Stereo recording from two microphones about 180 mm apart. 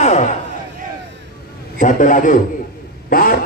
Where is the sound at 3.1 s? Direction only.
50° left (ahead or behind).